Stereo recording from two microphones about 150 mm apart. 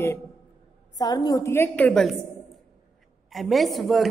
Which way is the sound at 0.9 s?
25° left (ahead or behind).